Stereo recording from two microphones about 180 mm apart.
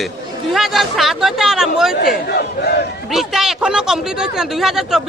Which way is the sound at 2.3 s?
60° left (ahead or behind).